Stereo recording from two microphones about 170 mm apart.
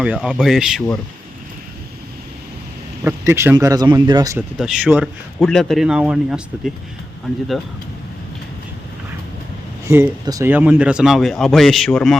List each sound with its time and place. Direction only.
0.0 s a man's voice: 5° right (ahead or behind)
3.0 s speech: 15° right (ahead or behind)
4.4 s a man's voice: 5° right (ahead or behind)
5.5 s a man's voice: 5° left (ahead or behind)
9.8 s a man's voice: 15° right (ahead or behind); by 12.1 s 5° left (ahead or behind)